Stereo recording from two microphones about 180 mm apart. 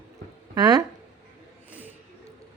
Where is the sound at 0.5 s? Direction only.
20° right (ahead or behind).